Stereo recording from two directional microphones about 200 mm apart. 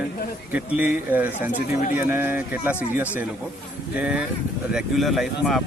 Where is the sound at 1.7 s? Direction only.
40° left (ahead or behind).